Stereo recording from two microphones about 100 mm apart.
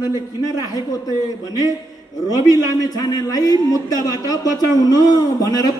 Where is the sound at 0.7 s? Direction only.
40° left (ahead or behind).